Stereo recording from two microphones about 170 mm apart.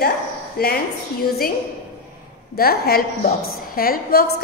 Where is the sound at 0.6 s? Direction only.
65° left (ahead or behind).